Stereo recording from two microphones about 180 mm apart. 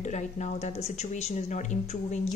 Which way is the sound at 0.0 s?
40° left (ahead or behind).